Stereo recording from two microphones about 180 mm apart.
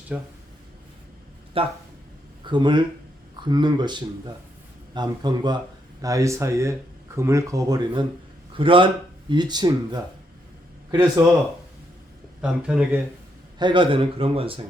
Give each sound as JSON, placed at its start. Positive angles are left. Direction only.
{"t": 0.1, "sound": "speech", "side_deg": -5}
{"t": 1.5, "sound": "speech", "side_deg": -30}
{"t": 12.4, "sound": "speech", "side_deg": -5}
{"t": 13.6, "sound": "speech", "side_deg": -25}